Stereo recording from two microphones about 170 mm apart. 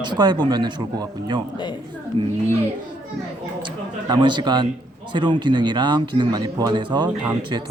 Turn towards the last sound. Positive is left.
turn(degrees=-25)  # may be behind; listen again after turning